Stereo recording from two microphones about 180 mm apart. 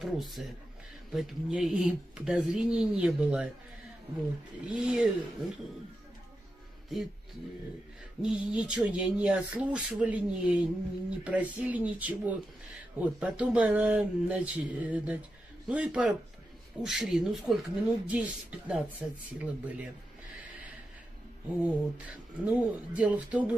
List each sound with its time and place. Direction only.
0.0 s speech: centre (ahead or behind)
4.6 s speech: 5° right (ahead or behind)
6.9 s speech: centre (ahead or behind)
8.2 s speech: 5° right (ahead or behind)
21.6 s speech: 10° right (ahead or behind)